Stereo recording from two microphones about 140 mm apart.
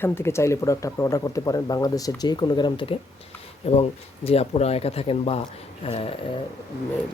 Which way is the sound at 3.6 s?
45° left (ahead or behind).